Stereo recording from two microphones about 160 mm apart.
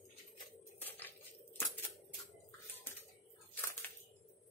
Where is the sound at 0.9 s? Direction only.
10° left (ahead or behind).